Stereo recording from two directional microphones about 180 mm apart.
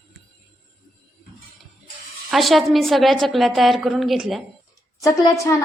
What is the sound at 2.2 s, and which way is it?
A woman's voice, centre (ahead or behind).